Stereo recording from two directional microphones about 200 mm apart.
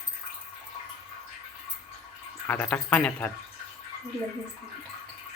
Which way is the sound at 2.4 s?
10° left (ahead or behind).